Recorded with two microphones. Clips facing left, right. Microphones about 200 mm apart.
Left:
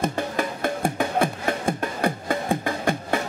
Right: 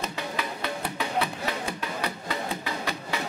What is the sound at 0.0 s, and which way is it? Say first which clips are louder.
Music: left 7 dB; 50° left (ahead or behind).